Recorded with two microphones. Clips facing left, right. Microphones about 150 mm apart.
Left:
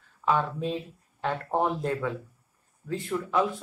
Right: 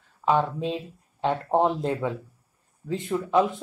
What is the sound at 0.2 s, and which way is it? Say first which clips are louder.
Speech: right 3 dB; 20° right (ahead or behind).